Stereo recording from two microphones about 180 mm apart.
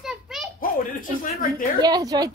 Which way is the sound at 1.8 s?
20° right (ahead or behind).